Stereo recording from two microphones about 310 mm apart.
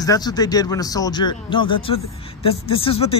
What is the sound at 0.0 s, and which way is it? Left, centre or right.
Speech, centre.